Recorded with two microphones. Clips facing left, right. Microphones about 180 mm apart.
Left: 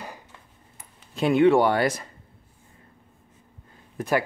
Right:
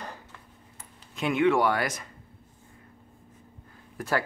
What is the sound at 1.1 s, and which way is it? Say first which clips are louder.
Speech: left 5 dB; 35° left (ahead or behind).